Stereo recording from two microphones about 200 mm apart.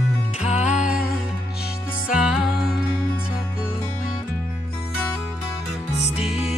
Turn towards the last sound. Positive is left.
turn(degrees=-5)  # may be behind; listen again after turning